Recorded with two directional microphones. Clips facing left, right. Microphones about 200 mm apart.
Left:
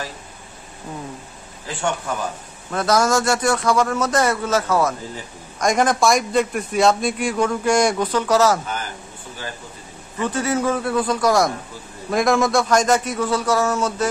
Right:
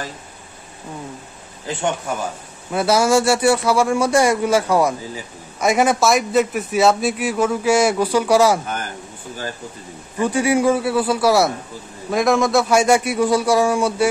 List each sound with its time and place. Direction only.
1.7 s speech: 20° right (ahead or behind)
2.7 s a man's voice: 10° right (ahead or behind)
10.2 s a man's voice: 10° right (ahead or behind)